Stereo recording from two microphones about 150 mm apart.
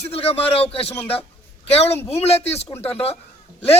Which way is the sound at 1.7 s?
45° left (ahead or behind).